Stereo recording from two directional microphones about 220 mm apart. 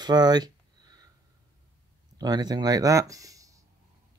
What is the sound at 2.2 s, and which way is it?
Speech, 15° right (ahead or behind).